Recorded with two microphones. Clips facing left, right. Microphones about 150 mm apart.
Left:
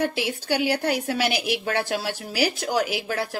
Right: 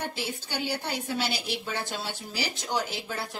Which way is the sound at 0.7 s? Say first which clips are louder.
Left 8 dB; 80° left.